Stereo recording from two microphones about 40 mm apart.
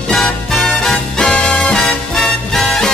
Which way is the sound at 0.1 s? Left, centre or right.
Centre.